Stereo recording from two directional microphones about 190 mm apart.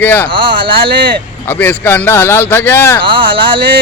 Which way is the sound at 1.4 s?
10° left (ahead or behind).